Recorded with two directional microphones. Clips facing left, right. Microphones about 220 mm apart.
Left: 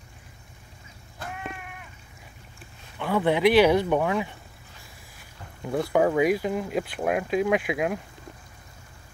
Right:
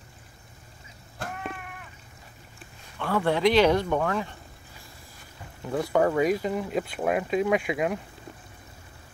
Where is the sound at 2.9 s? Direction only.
15° left (ahead or behind).